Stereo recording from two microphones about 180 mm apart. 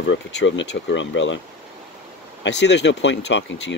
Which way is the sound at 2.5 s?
75° left (ahead or behind).